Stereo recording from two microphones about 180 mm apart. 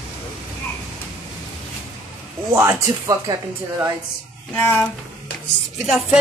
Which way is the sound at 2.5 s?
15° right (ahead or behind).